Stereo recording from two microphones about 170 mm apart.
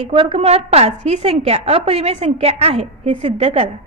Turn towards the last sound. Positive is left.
turn(degrees=-40)  # may be behind; listen again after turning